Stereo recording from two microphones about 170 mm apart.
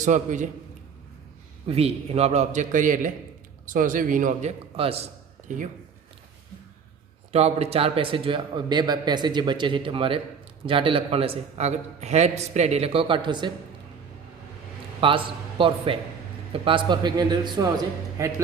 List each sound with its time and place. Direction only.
0.0 s a man's voice: 45° right (ahead or behind)
1.6 s a man's voice: 35° right (ahead or behind)
5.5 s a man's voice: 50° right (ahead or behind)
7.3 s a man's voice: 40° right (ahead or behind)
15.0 s a man's voice: 30° right (ahead or behind)